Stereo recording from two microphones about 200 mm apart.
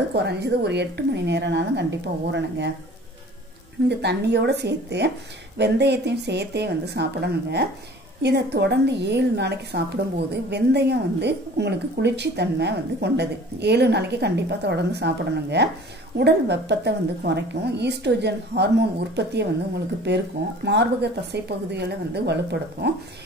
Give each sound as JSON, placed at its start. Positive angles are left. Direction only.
{"t": 0.1, "sound": "a woman's voice", "side_deg": -55}
{"t": 4.0, "sound": "a woman's voice", "side_deg": -55}
{"t": 20.6, "sound": "a woman's voice", "side_deg": -60}